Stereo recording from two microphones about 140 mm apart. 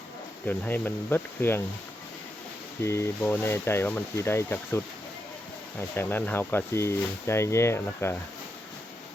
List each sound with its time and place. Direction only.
0.4 s speech: 15° left (ahead or behind)
2.8 s speech: 20° left (ahead or behind)
6.0 s speech: 15° left (ahead or behind)